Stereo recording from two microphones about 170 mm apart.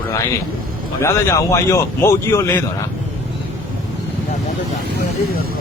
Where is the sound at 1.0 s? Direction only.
15° left (ahead or behind).